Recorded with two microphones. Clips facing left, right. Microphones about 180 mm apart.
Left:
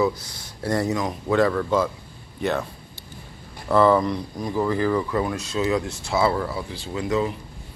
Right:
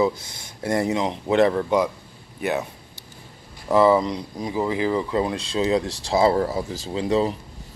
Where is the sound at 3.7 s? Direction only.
15° right (ahead or behind); by 7.3 s 30° right (ahead or behind).